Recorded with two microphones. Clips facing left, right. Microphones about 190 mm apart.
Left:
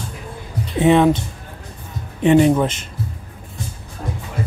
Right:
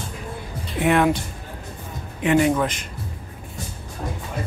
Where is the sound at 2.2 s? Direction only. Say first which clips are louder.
Left 5 dB; 25° left (ahead or behind).